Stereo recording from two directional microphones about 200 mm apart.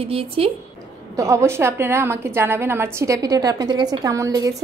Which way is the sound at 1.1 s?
15° right (ahead or behind).